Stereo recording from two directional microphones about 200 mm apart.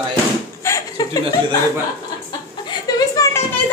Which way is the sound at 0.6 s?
15° left (ahead or behind).